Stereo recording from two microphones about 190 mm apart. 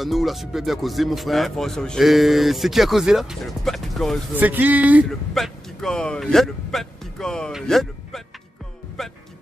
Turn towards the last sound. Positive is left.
turn(degrees=0)  # may be behind; listen again after turning